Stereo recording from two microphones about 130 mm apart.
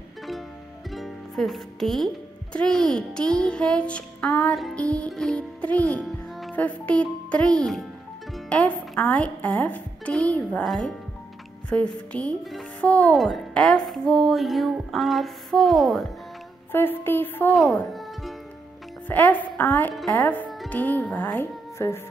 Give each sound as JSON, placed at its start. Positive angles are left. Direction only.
{"t": 0.8, "sound": "music", "side_deg": 0}
{"t": 2.5, "sound": "speech", "side_deg": 5}
{"t": 4.6, "sound": "music", "side_deg": 5}
{"t": 6.5, "sound": "speech", "side_deg": 10}
{"t": 10.7, "sound": "a sound", "side_deg": 0}
{"t": 11.7, "sound": "speech", "side_deg": 10}
{"t": 12.9, "sound": "a sound", "side_deg": 5}
{"t": 16.7, "sound": "speech", "side_deg": 15}
{"t": 17.5, "sound": "a sound", "side_deg": 0}
{"t": 19.0, "sound": "speech", "side_deg": 15}